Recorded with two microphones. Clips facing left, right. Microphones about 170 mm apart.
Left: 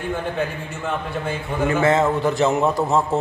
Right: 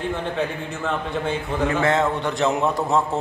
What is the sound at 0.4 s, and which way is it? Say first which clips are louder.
A man's voice: even; 5° left (ahead or behind).